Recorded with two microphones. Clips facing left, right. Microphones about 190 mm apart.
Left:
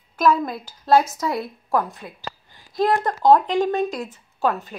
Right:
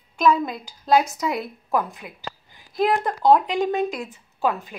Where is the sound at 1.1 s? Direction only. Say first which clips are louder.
Left 1 dB; 20° right (ahead or behind).